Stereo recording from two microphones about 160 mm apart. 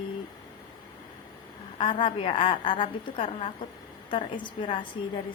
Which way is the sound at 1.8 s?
35° left (ahead or behind).